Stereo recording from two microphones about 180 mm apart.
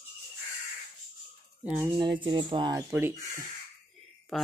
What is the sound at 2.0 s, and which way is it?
Speech, 25° right (ahead or behind).